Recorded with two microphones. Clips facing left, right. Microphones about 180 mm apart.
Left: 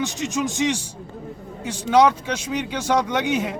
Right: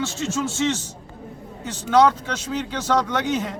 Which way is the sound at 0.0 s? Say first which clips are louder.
Left 1 dB; 15° left (ahead or behind).